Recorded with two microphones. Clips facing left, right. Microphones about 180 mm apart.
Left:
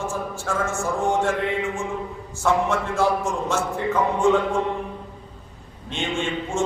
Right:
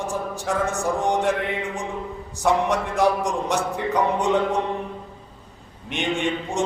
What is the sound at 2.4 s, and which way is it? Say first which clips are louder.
A man's voice: right 1 dB; 15° right (ahead or behind).